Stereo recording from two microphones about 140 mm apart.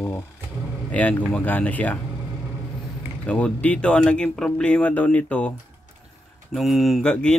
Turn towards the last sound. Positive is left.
turn(degrees=5)  # may be behind; listen again after turning